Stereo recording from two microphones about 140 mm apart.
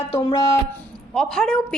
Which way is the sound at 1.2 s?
5° left (ahead or behind).